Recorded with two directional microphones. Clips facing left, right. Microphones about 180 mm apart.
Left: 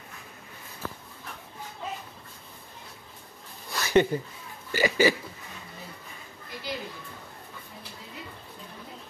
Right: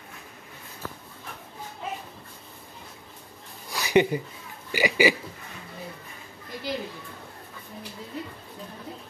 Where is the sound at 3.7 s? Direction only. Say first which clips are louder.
Right 1 dB; 15° right (ahead or behind).